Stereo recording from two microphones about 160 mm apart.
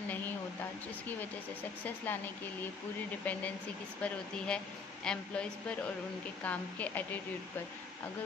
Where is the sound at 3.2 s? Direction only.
10° left (ahead or behind).